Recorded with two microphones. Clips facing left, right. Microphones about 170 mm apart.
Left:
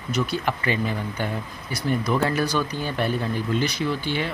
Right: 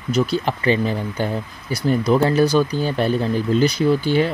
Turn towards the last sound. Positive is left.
turn(degrees=-40)  # may be behind; listen again after turning